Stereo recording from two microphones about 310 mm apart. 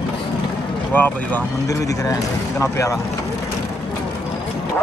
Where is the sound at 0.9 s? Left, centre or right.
Centre.